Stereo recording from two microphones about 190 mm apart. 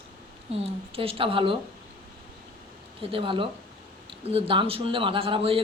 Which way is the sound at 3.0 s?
25° right (ahead or behind).